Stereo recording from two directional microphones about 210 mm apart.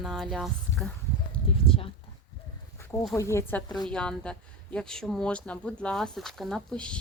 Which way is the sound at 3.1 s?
15° left (ahead or behind).